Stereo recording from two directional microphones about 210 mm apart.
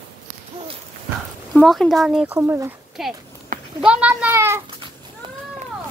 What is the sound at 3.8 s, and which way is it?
Speech, 5° right (ahead or behind).